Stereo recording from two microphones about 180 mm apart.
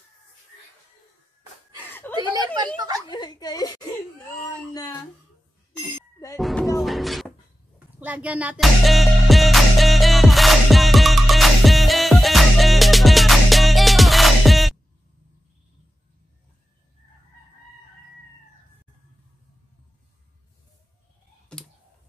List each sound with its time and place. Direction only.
1.9 s chuckle: 10° left (ahead or behind)
2.1 s chatter: 25° right (ahead or behind)
3.1 s a woman's voice: 25° left (ahead or behind)
4.4 s a sound: 20° left (ahead or behind)
6.3 s music: centre (ahead or behind)